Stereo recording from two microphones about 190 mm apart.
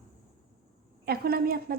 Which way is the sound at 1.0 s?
55° right (ahead or behind).